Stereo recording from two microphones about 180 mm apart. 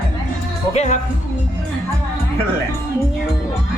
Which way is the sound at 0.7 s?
40° left (ahead or behind).